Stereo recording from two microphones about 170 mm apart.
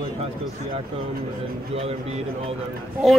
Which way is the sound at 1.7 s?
35° right (ahead or behind).